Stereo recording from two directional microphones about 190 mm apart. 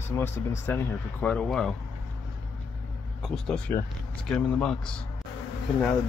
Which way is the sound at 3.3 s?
5° left (ahead or behind).